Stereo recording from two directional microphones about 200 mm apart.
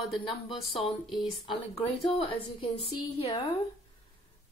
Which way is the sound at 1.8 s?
30° left (ahead or behind).